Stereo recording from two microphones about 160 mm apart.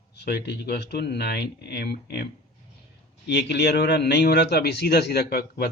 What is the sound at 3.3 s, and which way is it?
A man's voice, 90° left.